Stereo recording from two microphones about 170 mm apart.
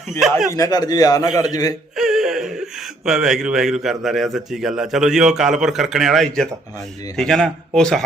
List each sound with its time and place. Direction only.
0.2 s a man's voice: centre (ahead or behind)
0.5 s a man's voice: 20° left (ahead or behind)
2.0 s a sound: centre (ahead or behind)
3.0 s a man's voice: 5° right (ahead or behind)